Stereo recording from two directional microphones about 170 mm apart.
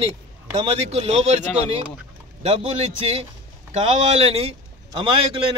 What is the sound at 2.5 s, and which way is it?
A man's voice, 35° right (ahead or behind).